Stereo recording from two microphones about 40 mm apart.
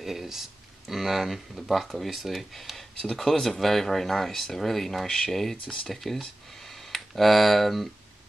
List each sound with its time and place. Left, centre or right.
0.0 s speech: centre
5.0 s speech: centre
5.9 s speech: centre